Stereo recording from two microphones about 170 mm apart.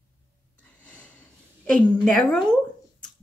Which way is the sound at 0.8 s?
10° left (ahead or behind).